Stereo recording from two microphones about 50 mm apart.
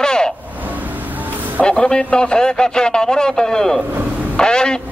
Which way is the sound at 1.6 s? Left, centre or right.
Centre.